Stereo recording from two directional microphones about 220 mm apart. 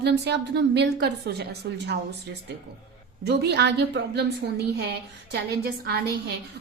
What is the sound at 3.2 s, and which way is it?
A woman's voice, 50° right (ahead or behind).